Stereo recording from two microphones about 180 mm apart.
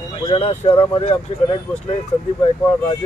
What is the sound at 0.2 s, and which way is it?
Speech, 30° left (ahead or behind).